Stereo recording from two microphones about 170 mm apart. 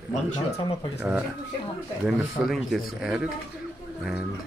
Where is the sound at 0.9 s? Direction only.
10° right (ahead or behind).